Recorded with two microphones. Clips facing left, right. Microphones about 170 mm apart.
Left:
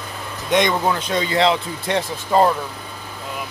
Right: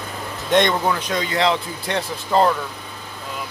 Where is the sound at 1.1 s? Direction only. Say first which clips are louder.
Left 4 dB; 25° left (ahead or behind).